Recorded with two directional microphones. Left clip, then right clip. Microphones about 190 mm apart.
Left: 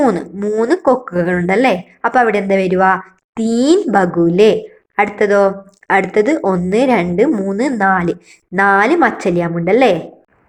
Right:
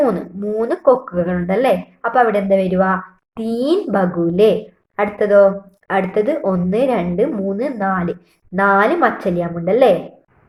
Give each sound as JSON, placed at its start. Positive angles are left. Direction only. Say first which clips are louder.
{"t": 0.0, "sound": "speech", "louder": "left 3 dB", "side_deg": 35}